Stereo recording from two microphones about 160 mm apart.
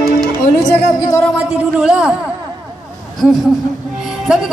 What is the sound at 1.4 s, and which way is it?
Music, 5° right (ahead or behind).